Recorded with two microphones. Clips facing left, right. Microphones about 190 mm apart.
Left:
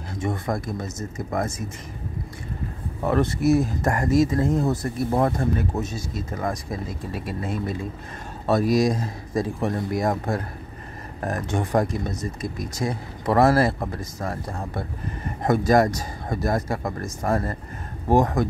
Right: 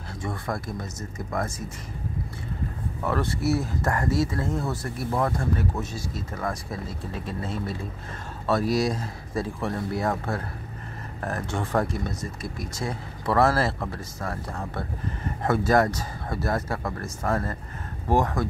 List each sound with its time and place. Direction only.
0.1 s speech: 20° left (ahead or behind)
3.0 s speech: 20° left (ahead or behind)